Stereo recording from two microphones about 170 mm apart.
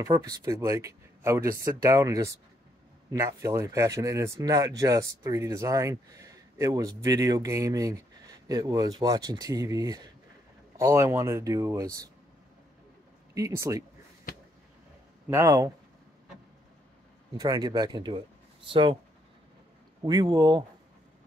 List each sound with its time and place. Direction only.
0.0 s speech: 20° right (ahead or behind)
13.3 s speech: 20° right (ahead or behind)
15.2 s speech: 15° right (ahead or behind)
17.4 s speech: 20° right (ahead or behind)
20.1 s speech: 25° right (ahead or behind)